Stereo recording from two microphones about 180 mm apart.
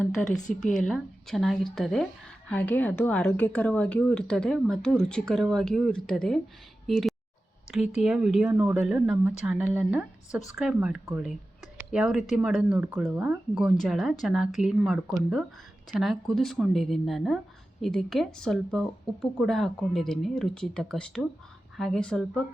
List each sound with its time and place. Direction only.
0.5 s speech: centre (ahead or behind)